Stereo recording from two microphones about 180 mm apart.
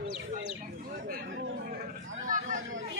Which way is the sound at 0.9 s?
50° right (ahead or behind).